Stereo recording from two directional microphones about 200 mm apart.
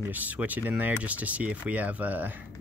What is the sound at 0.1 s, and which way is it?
Speech, 10° right (ahead or behind).